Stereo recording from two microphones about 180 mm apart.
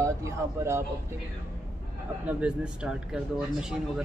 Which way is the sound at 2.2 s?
5° right (ahead or behind).